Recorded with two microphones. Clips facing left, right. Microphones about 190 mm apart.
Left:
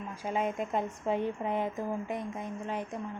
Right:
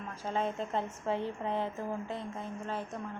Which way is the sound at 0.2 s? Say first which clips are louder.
Left 2 dB; 10° left (ahead or behind).